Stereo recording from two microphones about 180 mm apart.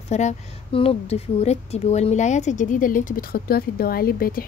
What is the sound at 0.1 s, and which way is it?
A woman's voice, 40° left (ahead or behind).